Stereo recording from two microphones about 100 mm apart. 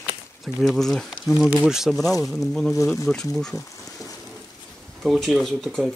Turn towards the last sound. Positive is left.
turn(degrees=0)  # may be behind; listen again after turning